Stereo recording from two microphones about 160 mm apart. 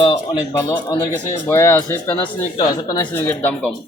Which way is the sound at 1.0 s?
20° left (ahead or behind).